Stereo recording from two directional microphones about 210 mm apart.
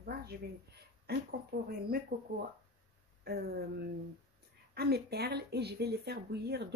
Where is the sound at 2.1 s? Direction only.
35° right (ahead or behind).